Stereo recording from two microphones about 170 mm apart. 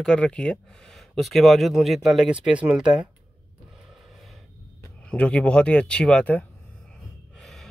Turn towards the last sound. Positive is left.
turn(degrees=0)  # may be behind; listen again after turning